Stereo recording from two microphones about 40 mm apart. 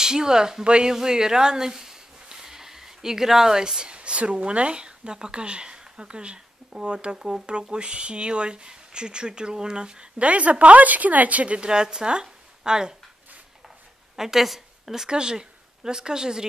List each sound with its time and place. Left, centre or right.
0.0 s speech: centre
14.1 s a woman's voice: centre
15.0 s speech: right